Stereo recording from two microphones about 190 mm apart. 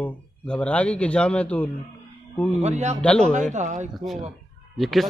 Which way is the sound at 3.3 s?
40° right (ahead or behind).